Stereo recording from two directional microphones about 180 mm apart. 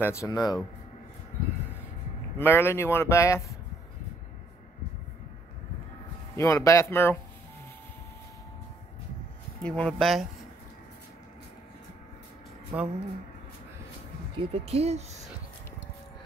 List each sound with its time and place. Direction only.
0.0 s speech: 15° left (ahead or behind)
2.3 s speech: 10° left (ahead or behind)
6.3 s speech: 15° left (ahead or behind)
9.6 s speech: 5° left (ahead or behind)
12.7 s speech: 10° right (ahead or behind)
14.4 s speech: 30° right (ahead or behind)